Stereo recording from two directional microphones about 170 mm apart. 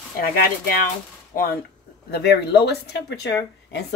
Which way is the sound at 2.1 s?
75° left (ahead or behind).